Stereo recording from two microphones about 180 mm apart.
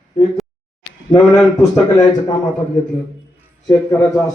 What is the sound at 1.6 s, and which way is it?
Speech, 20° left (ahead or behind).